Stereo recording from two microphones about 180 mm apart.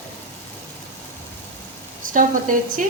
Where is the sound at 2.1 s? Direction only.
45° right (ahead or behind).